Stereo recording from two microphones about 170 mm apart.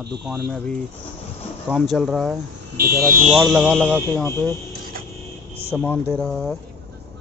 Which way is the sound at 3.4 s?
Centre (ahead or behind).